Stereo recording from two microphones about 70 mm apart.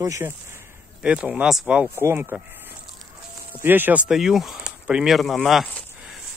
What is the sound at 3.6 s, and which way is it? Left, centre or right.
Speech, right.